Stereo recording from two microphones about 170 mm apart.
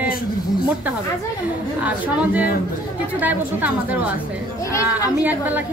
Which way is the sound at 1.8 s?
10° right (ahead or behind).